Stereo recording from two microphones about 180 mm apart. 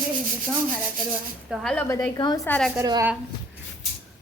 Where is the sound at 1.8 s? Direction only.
20° left (ahead or behind).